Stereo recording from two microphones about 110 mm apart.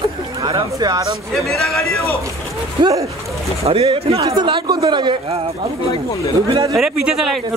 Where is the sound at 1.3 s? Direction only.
Centre (ahead or behind).